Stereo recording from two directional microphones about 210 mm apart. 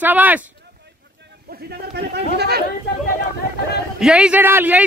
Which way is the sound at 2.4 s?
50° right (ahead or behind).